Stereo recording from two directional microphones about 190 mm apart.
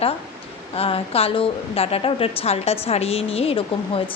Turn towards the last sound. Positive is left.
turn(degrees=30)  # may be behind; listen again after turning